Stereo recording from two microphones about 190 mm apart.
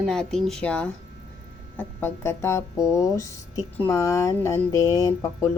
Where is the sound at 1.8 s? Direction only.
10° left (ahead or behind).